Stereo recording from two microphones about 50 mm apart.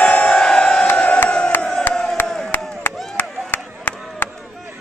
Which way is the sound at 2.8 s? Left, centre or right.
Left.